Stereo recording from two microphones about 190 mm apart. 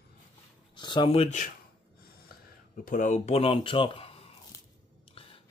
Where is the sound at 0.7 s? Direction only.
25° left (ahead or behind); by 1.5 s 40° left (ahead or behind).